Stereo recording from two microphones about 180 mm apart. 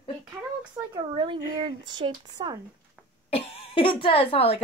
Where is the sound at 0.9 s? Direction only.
25° right (ahead or behind).